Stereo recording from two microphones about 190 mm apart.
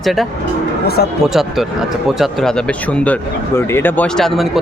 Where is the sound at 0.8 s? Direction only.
55° left (ahead or behind).